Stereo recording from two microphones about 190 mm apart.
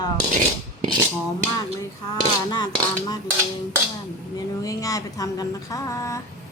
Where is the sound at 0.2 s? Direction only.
40° right (ahead or behind).